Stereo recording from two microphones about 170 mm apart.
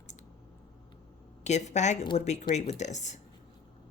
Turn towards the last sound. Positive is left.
turn(degrees=45)  # may be behind; listen again after turning